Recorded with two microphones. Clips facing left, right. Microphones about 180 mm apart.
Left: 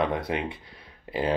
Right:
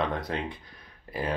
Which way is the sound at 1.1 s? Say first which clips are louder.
Left 5 dB; 25° left (ahead or behind).